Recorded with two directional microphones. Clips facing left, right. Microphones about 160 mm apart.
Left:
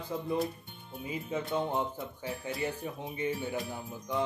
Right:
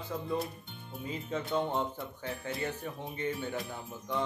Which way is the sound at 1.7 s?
15° left (ahead or behind).